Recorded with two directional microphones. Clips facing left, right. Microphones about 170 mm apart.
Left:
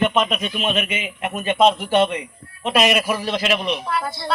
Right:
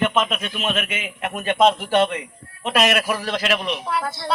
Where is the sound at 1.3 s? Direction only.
15° left (ahead or behind).